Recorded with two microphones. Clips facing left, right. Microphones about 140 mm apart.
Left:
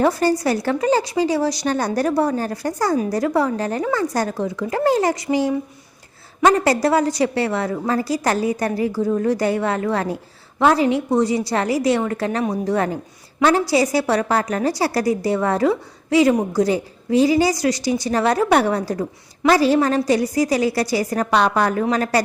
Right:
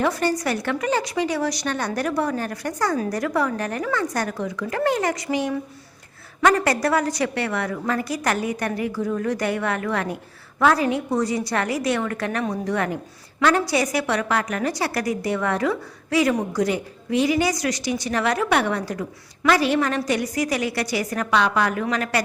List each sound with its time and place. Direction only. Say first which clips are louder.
0.0 s a woman's voice: left 5 dB; 35° left (ahead or behind)